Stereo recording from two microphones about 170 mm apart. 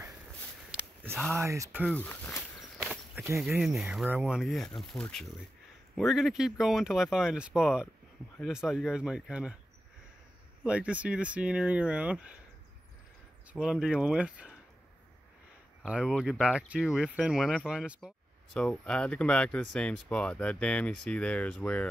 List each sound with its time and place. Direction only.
1.3 s speech: 15° right (ahead or behind)
1.9 s speech: 10° left (ahead or behind)
3.3 s speech: centre (ahead or behind)
10.6 s speech: 5° right (ahead or behind)
13.5 s speech: 5° right (ahead or behind)
15.8 s speech: 5° right (ahead or behind)
18.5 s speech: 5° left (ahead or behind)